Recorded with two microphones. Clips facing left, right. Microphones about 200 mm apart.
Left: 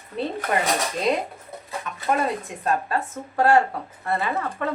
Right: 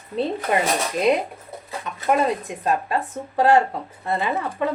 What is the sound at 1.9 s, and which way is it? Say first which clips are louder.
Bird: right 2 dB; 20° right (ahead or behind).